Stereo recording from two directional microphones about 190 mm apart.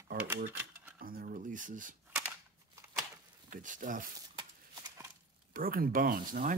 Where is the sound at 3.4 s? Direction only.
45° right (ahead or behind).